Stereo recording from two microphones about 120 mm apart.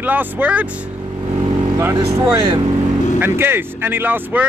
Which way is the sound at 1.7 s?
25° right (ahead or behind).